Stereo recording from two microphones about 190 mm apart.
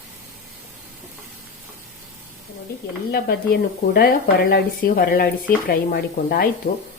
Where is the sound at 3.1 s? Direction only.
55° left (ahead or behind).